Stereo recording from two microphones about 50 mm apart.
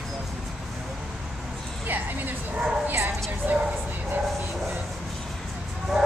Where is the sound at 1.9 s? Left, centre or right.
Right.